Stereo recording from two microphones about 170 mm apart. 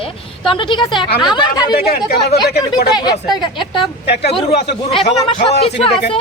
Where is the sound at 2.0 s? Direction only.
70° left (ahead or behind).